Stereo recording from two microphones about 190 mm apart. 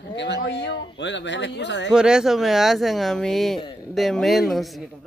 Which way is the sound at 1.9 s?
5° right (ahead or behind).